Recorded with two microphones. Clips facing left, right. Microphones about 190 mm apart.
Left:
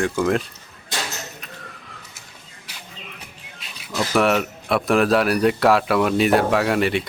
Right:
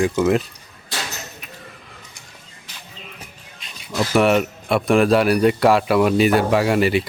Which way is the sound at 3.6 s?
Centre (ahead or behind).